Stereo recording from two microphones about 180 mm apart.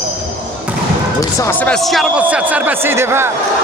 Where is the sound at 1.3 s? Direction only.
15° left (ahead or behind).